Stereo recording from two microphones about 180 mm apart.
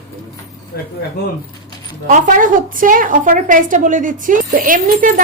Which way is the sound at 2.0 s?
45° right (ahead or behind).